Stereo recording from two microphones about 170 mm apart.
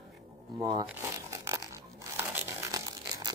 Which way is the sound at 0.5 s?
25° right (ahead or behind).